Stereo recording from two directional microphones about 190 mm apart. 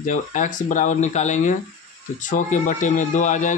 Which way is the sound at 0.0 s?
40° left (ahead or behind).